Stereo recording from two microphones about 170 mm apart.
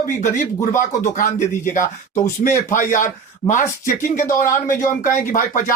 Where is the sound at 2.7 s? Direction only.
50° left (ahead or behind).